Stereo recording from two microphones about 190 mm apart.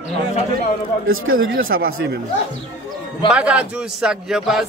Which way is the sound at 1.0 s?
90° right.